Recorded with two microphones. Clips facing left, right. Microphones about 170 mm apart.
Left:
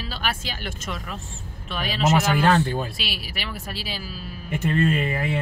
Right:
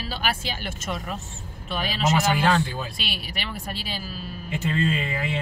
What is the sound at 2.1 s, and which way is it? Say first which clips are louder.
Speech: left 2 dB; 55° left (ahead or behind).